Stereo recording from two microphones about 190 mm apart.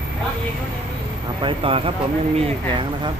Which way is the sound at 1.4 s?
25° right (ahead or behind).